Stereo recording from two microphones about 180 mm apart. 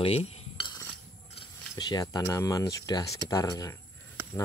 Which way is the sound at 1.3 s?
25° left (ahead or behind).